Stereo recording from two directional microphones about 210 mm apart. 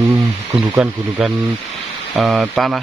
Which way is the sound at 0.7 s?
5° right (ahead or behind).